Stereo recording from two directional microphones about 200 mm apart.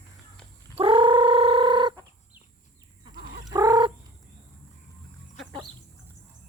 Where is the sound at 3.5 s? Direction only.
20° right (ahead or behind).